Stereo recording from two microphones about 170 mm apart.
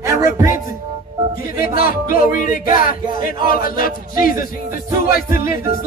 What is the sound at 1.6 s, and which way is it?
Speech, 55° left (ahead or behind).